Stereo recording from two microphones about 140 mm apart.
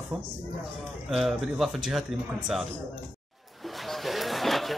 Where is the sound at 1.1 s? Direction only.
Centre (ahead or behind).